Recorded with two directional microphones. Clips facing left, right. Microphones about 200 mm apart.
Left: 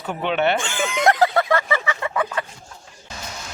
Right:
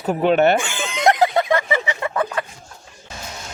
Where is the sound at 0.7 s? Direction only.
20° right (ahead or behind).